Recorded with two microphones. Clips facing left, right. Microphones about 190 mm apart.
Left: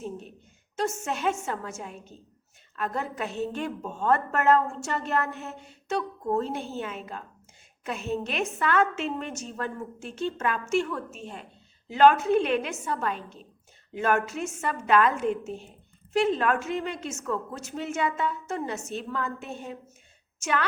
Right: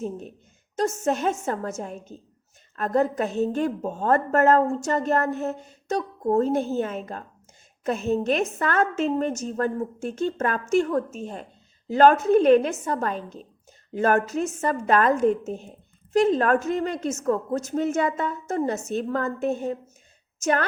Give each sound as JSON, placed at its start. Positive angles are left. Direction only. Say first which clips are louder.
{"t": 0.9, "sound": "a woman's voice", "louder": "right 5 dB", "side_deg": -40}